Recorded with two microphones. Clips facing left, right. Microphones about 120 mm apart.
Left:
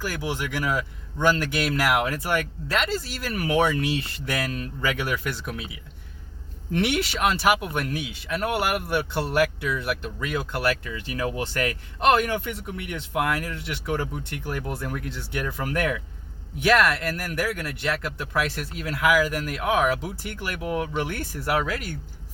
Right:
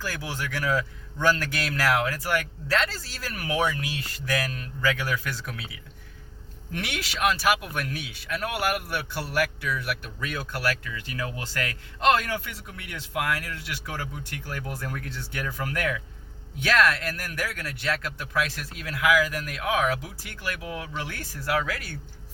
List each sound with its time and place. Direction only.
0.0 s speech: 15° left (ahead or behind)
6.7 s speech: 25° left (ahead or behind)
18.8 s speech: 30° left (ahead or behind)